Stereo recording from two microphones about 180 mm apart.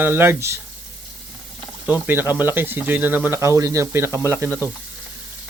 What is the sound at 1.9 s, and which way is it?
Speech, 10° right (ahead or behind).